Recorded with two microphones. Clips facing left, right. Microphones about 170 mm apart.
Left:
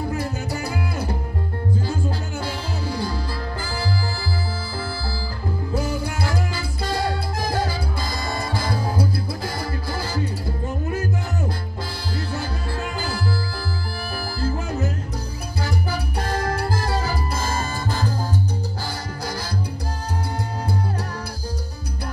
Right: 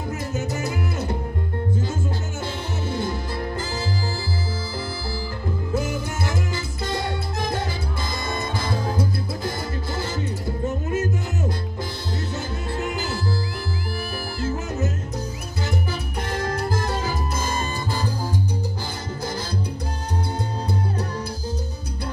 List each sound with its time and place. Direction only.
0.1 s music: 20° right (ahead or behind)
2.4 s music: 20° right (ahead or behind)
5.8 s music: 20° right (ahead or behind)
14.4 s music: 20° right (ahead or behind)
15.6 s salsa music: 20° right (ahead or behind)
16.5 s music: 20° right (ahead or behind)